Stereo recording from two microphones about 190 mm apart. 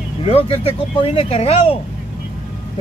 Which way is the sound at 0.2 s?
30° left (ahead or behind).